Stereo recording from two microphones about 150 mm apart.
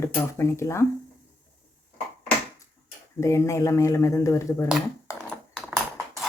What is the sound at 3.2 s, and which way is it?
Speech, 20° left (ahead or behind).